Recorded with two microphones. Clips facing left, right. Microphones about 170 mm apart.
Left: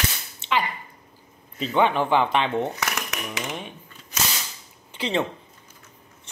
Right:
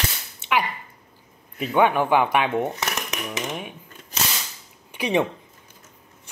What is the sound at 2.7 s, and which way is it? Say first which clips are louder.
Speech: right 1 dB; 20° right (ahead or behind).